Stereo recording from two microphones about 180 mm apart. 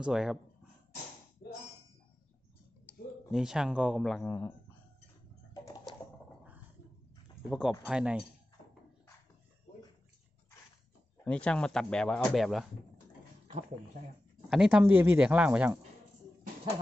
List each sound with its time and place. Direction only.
0.0 s speech: 5° right (ahead or behind)
1.4 s a sound: 60° left (ahead or behind)
2.9 s a sound: 10° left (ahead or behind)
3.3 s speech: 5° right (ahead or behind)
4.3 s speech: 10° left (ahead or behind)
7.5 s speech: centre (ahead or behind)
11.3 s speech: 5° left (ahead or behind)
14.5 s speech: 5° right (ahead or behind)